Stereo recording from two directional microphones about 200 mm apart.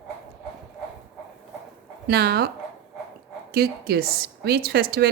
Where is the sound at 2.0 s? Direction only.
55° right (ahead or behind).